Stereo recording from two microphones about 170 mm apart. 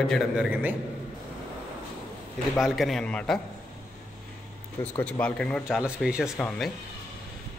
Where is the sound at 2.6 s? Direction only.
Centre (ahead or behind).